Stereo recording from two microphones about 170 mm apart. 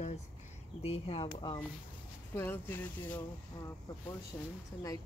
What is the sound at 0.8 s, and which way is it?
Speech, 35° left (ahead or behind).